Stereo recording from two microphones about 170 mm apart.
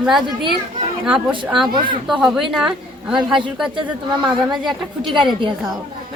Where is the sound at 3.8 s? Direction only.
25° right (ahead or behind).